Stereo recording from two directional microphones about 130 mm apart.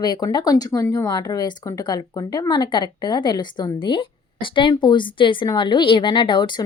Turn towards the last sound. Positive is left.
turn(degrees=35)  # may be behind; listen again after turning